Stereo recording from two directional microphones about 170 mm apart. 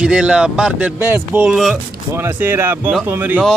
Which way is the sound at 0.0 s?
5° right (ahead or behind).